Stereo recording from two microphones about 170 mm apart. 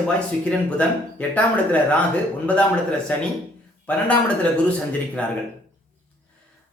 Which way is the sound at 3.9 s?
5° left (ahead or behind).